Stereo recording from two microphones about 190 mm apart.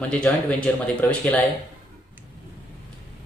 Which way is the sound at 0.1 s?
5° left (ahead or behind).